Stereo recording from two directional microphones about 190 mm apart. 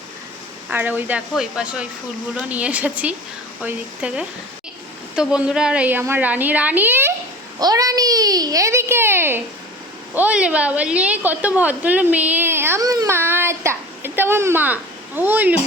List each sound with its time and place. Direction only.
0.7 s a woman's voice: 10° right (ahead or behind)
7.6 s a sound: 20° right (ahead or behind)
10.2 s a woman's voice: 5° right (ahead or behind)